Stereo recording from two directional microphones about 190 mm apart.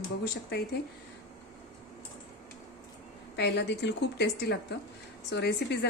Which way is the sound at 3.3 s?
60° left (ahead or behind).